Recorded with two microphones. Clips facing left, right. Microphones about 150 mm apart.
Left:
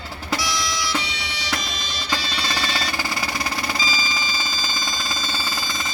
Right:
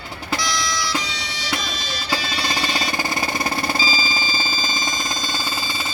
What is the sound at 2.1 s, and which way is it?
Music, 15° right (ahead or behind).